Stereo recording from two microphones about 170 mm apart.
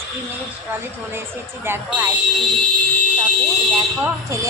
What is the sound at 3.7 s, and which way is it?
Speech, 15° right (ahead or behind).